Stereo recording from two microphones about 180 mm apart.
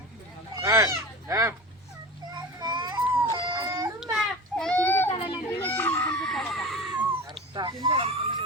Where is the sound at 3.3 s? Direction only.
20° right (ahead or behind).